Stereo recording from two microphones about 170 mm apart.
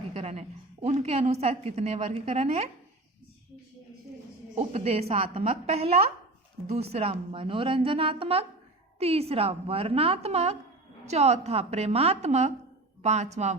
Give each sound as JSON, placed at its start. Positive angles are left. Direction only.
{"t": 0.1, "sound": "a woman's voice", "side_deg": -40}
{"t": 4.5, "sound": "a woman's voice", "side_deg": -35}